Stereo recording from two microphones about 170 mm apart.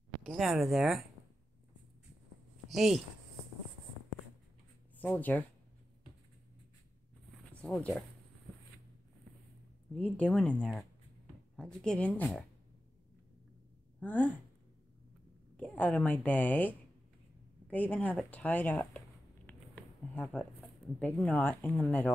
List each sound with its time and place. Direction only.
0.2 s speech: centre (ahead or behind)
2.7 s speech: centre (ahead or behind)
4.9 s speech: 10° left (ahead or behind)
7.6 s a woman's voice: 5° left (ahead or behind)
9.9 s a woman's voice: 10° left (ahead or behind)
13.9 s speech: 10° left (ahead or behind)
15.5 s a woman's voice: 10° left (ahead or behind)